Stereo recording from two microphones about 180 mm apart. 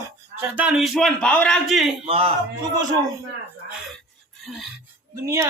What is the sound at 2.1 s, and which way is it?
Speech, 30° right (ahead or behind).